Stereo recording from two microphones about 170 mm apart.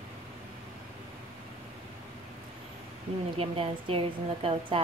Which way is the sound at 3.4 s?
35° right (ahead or behind).